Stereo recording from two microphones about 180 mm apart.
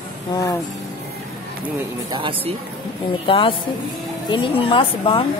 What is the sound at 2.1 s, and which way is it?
Speech, 30° right (ahead or behind).